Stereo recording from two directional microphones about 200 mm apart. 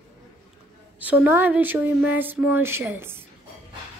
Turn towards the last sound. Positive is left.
turn(degrees=-10)  # may be behind; listen again after turning